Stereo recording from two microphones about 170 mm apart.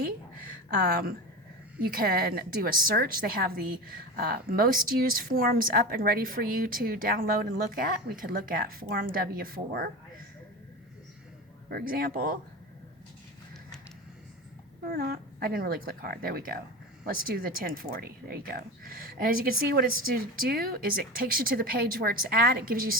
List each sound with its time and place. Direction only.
0.0 s a sound: 65° right (ahead or behind)
1.8 s a woman's voice: 60° right (ahead or behind)
11.7 s a woman's voice: 60° right (ahead or behind)
14.8 s a woman's voice: 60° right (ahead or behind)